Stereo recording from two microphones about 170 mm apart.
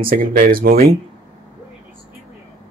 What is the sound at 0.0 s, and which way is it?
Speech, 55° right (ahead or behind).